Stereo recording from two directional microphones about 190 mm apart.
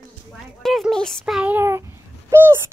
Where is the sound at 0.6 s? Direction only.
Centre (ahead or behind).